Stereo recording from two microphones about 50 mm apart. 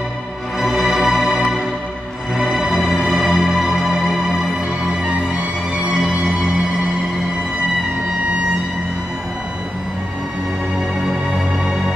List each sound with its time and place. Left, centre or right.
0.6 s music: centre
5.9 s music: centre
11.0 s music: centre